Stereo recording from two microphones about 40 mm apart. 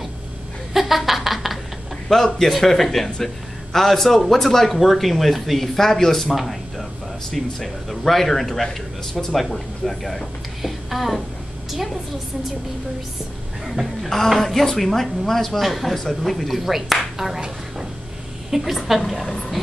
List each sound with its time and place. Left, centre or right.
0.7 s a sound: centre
2.0 s speech: centre
13.7 s speech: centre
18.5 s a woman's voice: centre
18.9 s speech: centre